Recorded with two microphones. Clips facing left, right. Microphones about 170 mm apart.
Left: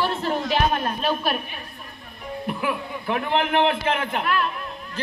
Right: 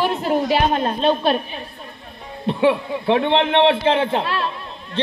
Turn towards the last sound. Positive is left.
turn(degrees=-30)  # may be behind; listen again after turning